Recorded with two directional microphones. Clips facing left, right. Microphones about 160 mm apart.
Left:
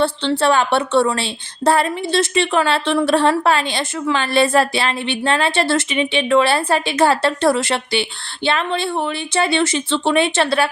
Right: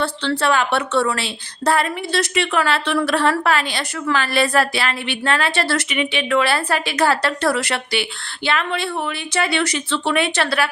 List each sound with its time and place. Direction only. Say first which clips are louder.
0.0 s a woman's voice: left 4 dB; 30° left (ahead or behind)